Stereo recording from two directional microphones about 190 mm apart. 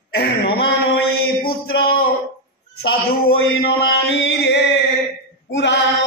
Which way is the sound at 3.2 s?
60° left (ahead or behind).